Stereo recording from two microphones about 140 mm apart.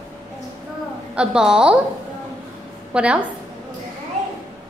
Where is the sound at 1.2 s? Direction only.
5° right (ahead or behind).